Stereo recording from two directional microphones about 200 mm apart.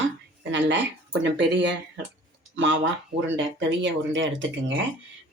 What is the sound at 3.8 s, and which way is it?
Speech, 70° right (ahead or behind).